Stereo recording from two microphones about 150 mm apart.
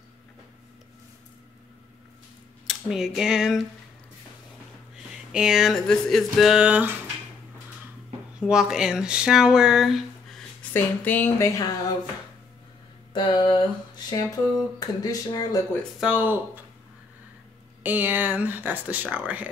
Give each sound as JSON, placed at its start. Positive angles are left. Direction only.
{"t": 2.6, "sound": "speech", "side_deg": 0}
{"t": 5.1, "sound": "speech", "side_deg": -5}
{"t": 8.4, "sound": "speech", "side_deg": -5}
{"t": 10.7, "sound": "speech", "side_deg": 15}
{"t": 13.1, "sound": "a sound", "side_deg": 30}
{"t": 16.0, "sound": "speech", "side_deg": -10}
{"t": 17.8, "sound": "speech", "side_deg": -10}